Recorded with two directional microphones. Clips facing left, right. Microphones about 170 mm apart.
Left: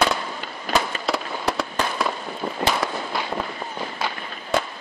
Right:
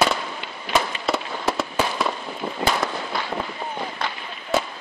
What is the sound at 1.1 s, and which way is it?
Fireworks, centre (ahead or behind).